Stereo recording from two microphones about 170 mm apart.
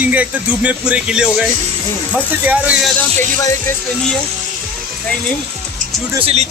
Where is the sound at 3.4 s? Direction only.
20° left (ahead or behind).